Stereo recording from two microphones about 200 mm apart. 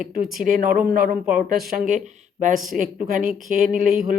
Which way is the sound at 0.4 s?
45° right (ahead or behind).